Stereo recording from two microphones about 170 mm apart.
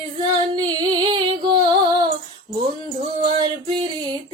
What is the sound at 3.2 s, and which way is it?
Female singing, 30° right (ahead or behind).